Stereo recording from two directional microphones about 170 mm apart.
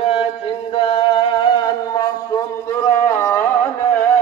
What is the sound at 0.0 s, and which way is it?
Chant, 30° left (ahead or behind).